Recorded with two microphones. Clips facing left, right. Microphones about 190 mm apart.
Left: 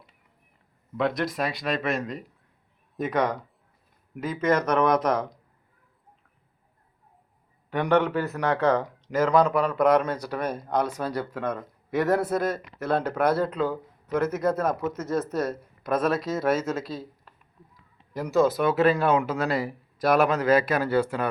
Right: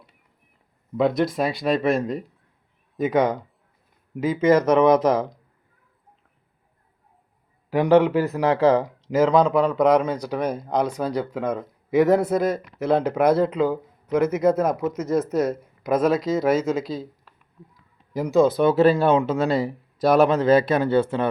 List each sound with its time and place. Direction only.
1.2 s speech: 25° right (ahead or behind)
3.0 s speech: centre (ahead or behind)
4.3 s speech: 25° right (ahead or behind)
4.7 s speech: 5° right (ahead or behind)
7.9 s speech: 25° right (ahead or behind)
8.8 s speech: 5° right (ahead or behind)
10.0 s speech: 15° right (ahead or behind)
18.3 s speech: 5° left (ahead or behind)
18.6 s speech: 30° right (ahead or behind)